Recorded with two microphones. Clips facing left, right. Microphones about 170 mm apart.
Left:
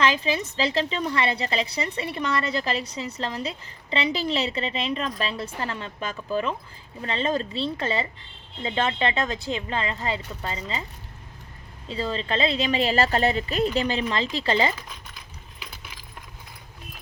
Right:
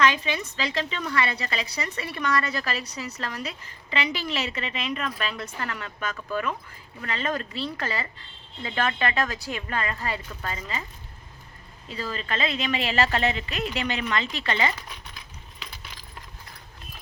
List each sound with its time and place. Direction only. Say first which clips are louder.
0.0 s a woman's voice: left 1 dB; 30° left (ahead or behind)
11.9 s speech: left 4 dB; 25° left (ahead or behind)
15.5 s keys jangling: left 1 dB; 5° left (ahead or behind)